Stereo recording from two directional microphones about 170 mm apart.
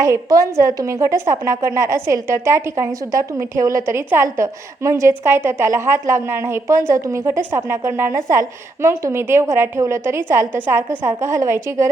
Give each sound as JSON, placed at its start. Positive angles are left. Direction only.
{"t": 0.0, "sound": "a woman's voice", "side_deg": -20}